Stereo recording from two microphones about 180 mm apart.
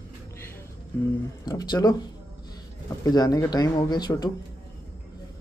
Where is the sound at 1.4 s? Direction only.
20° left (ahead or behind).